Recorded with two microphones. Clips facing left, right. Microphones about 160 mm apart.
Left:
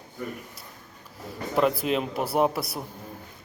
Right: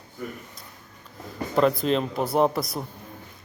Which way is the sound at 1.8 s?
5° left (ahead or behind).